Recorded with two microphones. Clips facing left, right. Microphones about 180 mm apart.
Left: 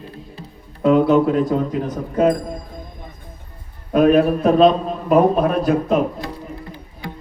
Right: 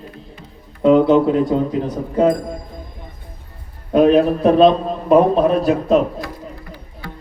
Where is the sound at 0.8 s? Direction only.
25° right (ahead or behind).